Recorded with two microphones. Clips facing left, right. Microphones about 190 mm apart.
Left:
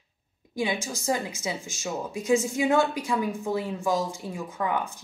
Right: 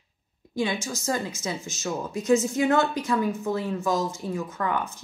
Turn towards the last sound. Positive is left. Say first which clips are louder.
# even
turn(degrees=15)  # may be behind; listen again after turning